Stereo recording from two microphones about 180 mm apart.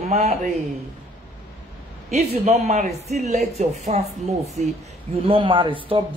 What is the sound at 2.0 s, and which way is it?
A man's voice, 40° right (ahead or behind).